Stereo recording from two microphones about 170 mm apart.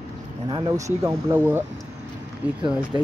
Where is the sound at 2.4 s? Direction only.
5° right (ahead or behind).